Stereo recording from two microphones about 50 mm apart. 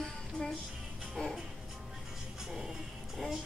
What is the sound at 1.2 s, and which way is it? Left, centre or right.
Music, centre.